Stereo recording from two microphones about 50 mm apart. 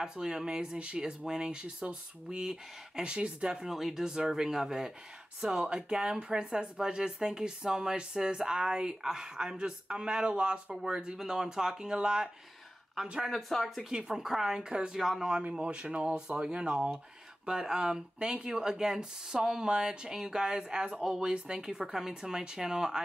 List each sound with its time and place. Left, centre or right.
0.0 s speech: centre
3.5 s speech: centre
13.3 s speech: centre
13.9 s speech: centre
15.0 s speech: centre
15.6 s speech: right